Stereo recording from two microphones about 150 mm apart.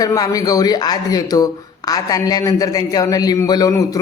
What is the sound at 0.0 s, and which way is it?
Speech, 25° left (ahead or behind).